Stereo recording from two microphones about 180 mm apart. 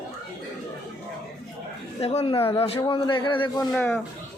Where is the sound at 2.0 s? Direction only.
35° left (ahead or behind).